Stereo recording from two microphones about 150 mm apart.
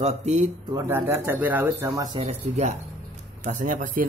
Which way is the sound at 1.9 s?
25° right (ahead or behind).